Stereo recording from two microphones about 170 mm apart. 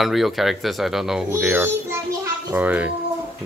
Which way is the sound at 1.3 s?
15° right (ahead or behind).